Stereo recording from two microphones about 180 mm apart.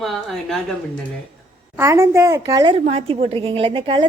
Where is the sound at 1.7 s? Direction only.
15° right (ahead or behind).